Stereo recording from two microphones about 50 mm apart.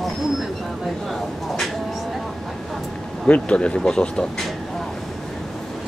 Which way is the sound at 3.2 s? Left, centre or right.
Left.